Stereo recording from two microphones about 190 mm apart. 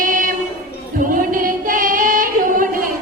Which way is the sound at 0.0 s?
45° right (ahead or behind).